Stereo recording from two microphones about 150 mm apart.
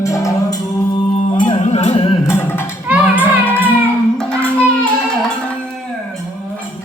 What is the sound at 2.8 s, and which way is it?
Music, 10° right (ahead or behind).